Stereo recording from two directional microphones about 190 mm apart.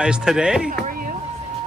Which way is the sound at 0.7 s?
45° right (ahead or behind).